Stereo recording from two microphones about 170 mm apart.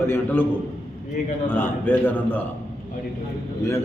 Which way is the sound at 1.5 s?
10° left (ahead or behind).